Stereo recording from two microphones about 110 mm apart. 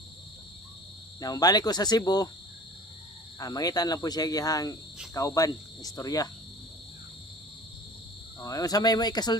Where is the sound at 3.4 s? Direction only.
35° left (ahead or behind).